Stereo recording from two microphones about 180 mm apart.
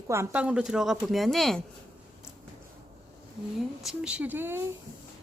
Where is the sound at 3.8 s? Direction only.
5° right (ahead or behind).